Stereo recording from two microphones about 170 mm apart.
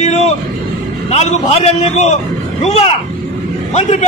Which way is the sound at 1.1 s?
40° left (ahead or behind).